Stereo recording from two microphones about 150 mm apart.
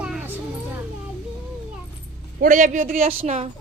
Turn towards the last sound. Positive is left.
turn(degrees=-45)  # may be behind; listen again after turning